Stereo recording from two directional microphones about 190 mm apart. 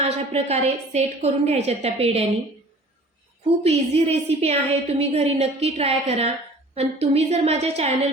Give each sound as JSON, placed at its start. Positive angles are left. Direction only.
{"t": 0.0, "sound": "a woman's voice", "side_deg": -35}
{"t": 3.6, "sound": "a woman's voice", "side_deg": -35}